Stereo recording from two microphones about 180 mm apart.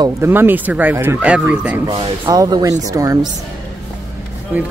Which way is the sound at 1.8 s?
25° right (ahead or behind).